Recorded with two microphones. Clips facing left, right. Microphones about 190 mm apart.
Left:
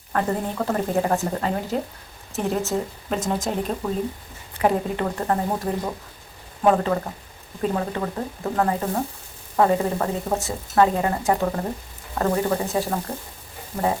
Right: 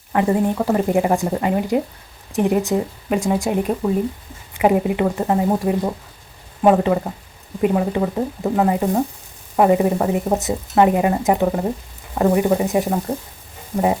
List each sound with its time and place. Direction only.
0.1 s speech: 15° right (ahead or behind)